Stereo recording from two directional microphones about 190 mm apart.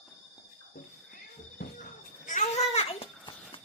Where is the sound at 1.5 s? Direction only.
45° left (ahead or behind).